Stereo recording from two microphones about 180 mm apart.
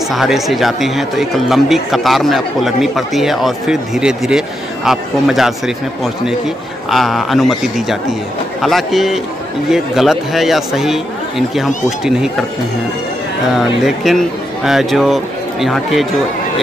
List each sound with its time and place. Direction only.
0.1 s speech: centre (ahead or behind)
13.8 s speech: centre (ahead or behind)